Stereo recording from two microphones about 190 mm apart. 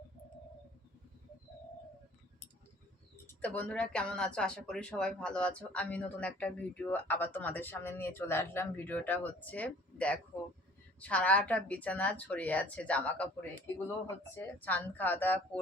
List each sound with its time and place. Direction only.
3.2 s speech: 5° left (ahead or behind)
14.3 s speech: 10° left (ahead or behind)